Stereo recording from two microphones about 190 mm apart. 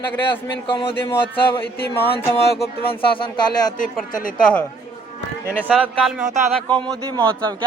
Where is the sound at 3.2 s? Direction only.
20° left (ahead or behind).